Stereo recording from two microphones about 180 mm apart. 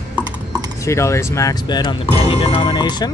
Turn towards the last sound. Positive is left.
turn(degrees=25)  # may be behind; listen again after turning